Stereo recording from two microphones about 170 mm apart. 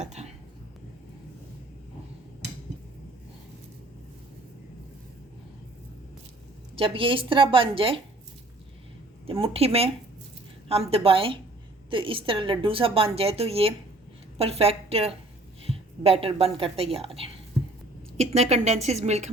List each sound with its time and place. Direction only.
0.0 s a sound: 40° right (ahead or behind)
6.7 s a woman's voice: 35° right (ahead or behind)
9.2 s a woman's voice: 35° right (ahead or behind)